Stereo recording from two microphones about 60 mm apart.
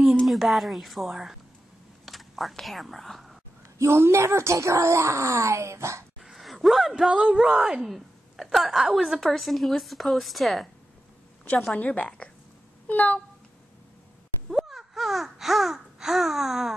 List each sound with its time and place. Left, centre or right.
0.3 s a woman's voice: centre
3.7 s speech: right
6.2 s a woman's voice: centre
11.7 s a woman's voice: left
12.8 s a sound: left
14.5 s a sound: centre